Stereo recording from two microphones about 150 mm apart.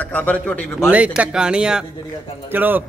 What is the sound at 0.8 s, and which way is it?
A man's voice, 10° right (ahead or behind).